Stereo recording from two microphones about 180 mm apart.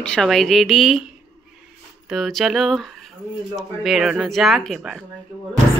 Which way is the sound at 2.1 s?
Centre (ahead or behind).